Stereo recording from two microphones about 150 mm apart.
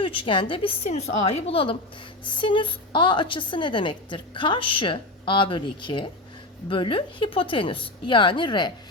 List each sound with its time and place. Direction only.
0.0 s a woman's voice: 35° left (ahead or behind)